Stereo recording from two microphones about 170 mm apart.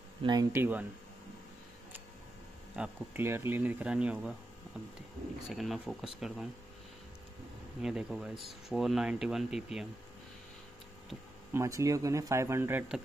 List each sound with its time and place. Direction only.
0.2 s speech: 25° right (ahead or behind)
2.7 s speech: 10° right (ahead or behind)
5.5 s speech: centre (ahead or behind)
7.8 s speech: 5° right (ahead or behind)
11.5 s speech: 20° right (ahead or behind)